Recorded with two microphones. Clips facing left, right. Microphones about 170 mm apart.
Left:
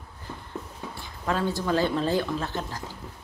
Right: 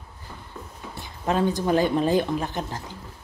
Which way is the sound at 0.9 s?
20° right (ahead or behind).